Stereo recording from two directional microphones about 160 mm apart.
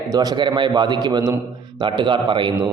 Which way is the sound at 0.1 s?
25° right (ahead or behind).